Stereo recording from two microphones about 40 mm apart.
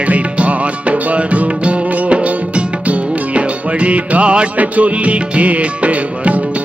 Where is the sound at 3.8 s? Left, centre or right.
Right.